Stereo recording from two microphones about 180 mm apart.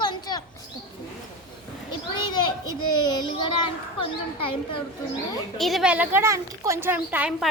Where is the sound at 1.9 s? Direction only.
25° left (ahead or behind).